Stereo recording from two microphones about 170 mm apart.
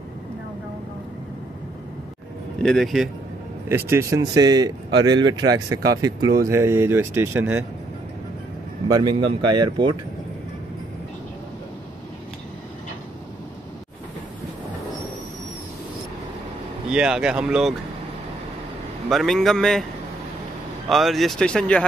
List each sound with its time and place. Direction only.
2.6 s speech: centre (ahead or behind)
3.6 s speech: 15° right (ahead or behind)
8.8 s speech: 25° right (ahead or behind)
16.9 s speech: 5° right (ahead or behind)
19.0 s speech: centre (ahead or behind)
20.9 s speech: centre (ahead or behind)